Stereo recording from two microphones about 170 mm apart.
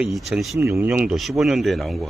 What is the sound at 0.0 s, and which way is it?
Speech, 5° right (ahead or behind).